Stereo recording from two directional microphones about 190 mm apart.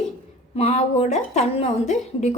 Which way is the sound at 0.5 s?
30° left (ahead or behind).